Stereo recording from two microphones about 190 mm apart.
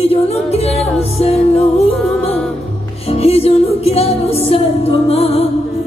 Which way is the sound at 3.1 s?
30° left (ahead or behind).